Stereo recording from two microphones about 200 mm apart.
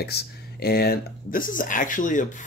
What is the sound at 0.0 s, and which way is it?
Speech, 55° left (ahead or behind).